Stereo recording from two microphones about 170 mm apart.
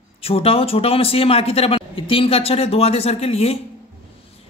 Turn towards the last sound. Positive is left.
turn(degrees=35)  # may be behind; listen again after turning